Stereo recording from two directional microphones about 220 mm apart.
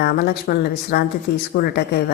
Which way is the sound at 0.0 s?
45° left (ahead or behind).